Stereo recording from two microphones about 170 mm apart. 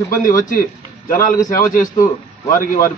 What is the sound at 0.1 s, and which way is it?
A man's voice, 50° left (ahead or behind).